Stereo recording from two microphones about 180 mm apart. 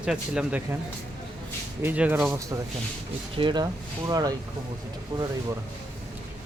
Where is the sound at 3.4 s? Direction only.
25° right (ahead or behind).